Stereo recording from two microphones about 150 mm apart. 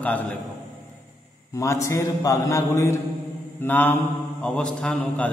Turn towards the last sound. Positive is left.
turn(degrees=5)  # may be behind; listen again after turning